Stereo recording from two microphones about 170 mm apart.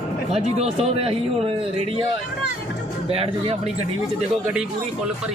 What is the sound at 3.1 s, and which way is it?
Speech, 35° right (ahead or behind).